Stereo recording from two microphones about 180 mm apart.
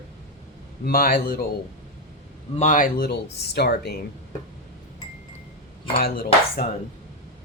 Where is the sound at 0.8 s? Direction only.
55° left (ahead or behind).